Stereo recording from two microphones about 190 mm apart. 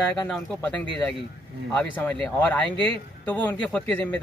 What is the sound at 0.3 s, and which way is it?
Speech, 5° left (ahead or behind).